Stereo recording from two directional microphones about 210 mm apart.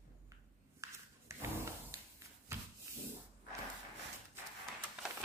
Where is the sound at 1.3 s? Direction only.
15° right (ahead or behind).